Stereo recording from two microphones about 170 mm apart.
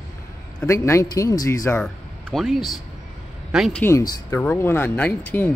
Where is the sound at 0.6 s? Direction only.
15° left (ahead or behind).